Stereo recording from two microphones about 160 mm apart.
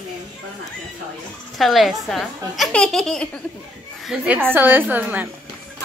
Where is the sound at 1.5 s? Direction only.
Centre (ahead or behind).